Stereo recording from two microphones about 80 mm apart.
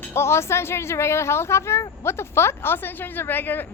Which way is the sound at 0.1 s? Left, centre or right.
Left.